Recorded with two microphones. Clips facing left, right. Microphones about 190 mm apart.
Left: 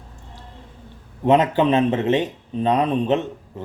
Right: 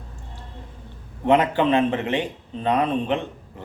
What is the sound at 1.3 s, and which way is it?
Speech, 20° left (ahead or behind).